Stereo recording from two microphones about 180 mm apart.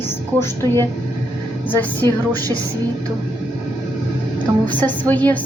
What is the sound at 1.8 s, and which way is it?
Speech, 10° left (ahead or behind).